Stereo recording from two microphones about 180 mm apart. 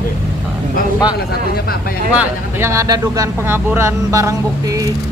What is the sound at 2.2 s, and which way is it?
Speech, 15° right (ahead or behind).